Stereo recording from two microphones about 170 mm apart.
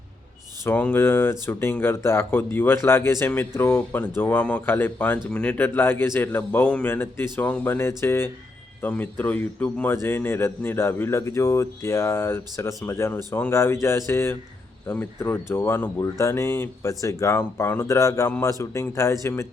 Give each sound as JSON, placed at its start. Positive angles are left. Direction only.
{"t": 0.6, "sound": "a man's voice", "side_deg": 10}